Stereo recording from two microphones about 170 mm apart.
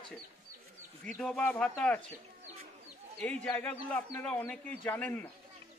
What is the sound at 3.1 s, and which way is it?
A man's voice, 5° left (ahead or behind).